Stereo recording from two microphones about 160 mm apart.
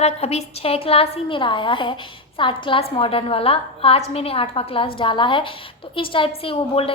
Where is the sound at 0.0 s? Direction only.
40° left (ahead or behind).